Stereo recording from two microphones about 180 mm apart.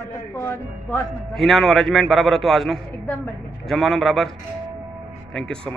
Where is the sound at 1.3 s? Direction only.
Centre (ahead or behind).